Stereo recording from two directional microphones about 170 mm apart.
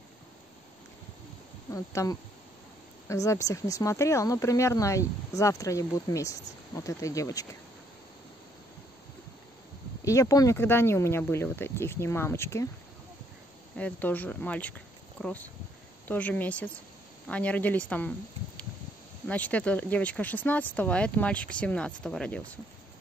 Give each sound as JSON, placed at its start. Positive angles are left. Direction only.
{"t": 1.7, "sound": "speech", "side_deg": 20}
{"t": 10.0, "sound": "speech", "side_deg": 20}
{"t": 13.7, "sound": "speech", "side_deg": 10}
{"t": 19.2, "sound": "speech", "side_deg": 10}